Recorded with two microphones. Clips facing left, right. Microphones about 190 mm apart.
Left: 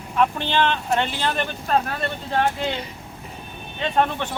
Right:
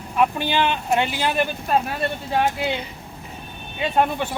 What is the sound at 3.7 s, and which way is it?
Speech, 10° right (ahead or behind).